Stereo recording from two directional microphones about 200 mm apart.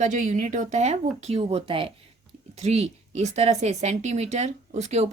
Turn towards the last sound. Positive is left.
turn(degrees=-35)  # may be behind; listen again after turning